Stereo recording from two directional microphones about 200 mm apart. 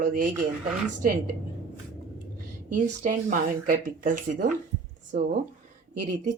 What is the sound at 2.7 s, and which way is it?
Speech, 40° right (ahead or behind).